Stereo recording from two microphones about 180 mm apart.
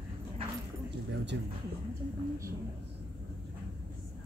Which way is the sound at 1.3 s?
75° right (ahead or behind).